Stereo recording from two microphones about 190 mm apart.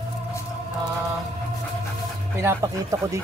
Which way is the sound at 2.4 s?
15° right (ahead or behind).